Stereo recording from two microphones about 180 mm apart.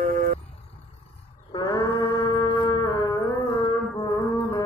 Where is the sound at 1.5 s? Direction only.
25° left (ahead or behind).